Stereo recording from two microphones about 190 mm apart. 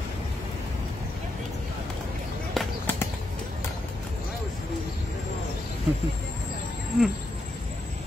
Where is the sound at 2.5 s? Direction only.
Centre (ahead or behind).